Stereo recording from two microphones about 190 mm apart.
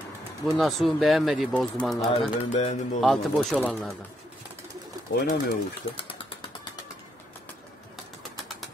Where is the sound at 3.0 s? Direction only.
Centre (ahead or behind).